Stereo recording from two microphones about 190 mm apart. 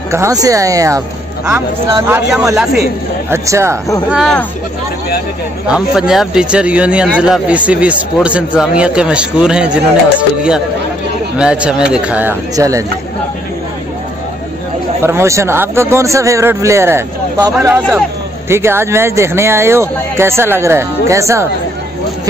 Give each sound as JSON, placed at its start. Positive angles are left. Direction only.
{"t": 0.1, "sound": "speech", "side_deg": -15}
{"t": 2.0, "sound": "speech", "side_deg": -10}
{"t": 3.3, "sound": "speech", "side_deg": -15}
{"t": 4.1, "sound": "speech", "side_deg": 0}
{"t": 5.7, "sound": "speech", "side_deg": -5}
{"t": 11.3, "sound": "speech", "side_deg": -5}
{"t": 15.0, "sound": "speech", "side_deg": -15}